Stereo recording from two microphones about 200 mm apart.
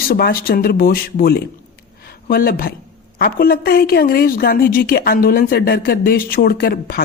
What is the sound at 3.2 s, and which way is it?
A woman's voice, 50° left (ahead or behind).